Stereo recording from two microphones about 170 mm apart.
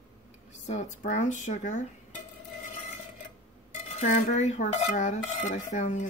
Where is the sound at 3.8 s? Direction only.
45° left (ahead or behind).